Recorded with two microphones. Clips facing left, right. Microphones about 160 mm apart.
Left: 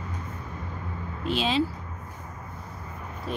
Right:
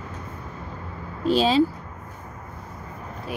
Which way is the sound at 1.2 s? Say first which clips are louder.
Right 7 dB; 35° right (ahead or behind).